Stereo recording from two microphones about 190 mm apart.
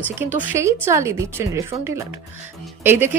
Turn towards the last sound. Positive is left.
turn(degrees=-10)  # may be behind; listen again after turning